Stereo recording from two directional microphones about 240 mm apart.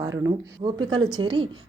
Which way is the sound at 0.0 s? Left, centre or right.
Centre.